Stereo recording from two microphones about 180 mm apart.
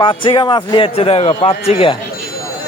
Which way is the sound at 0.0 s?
25° left (ahead or behind).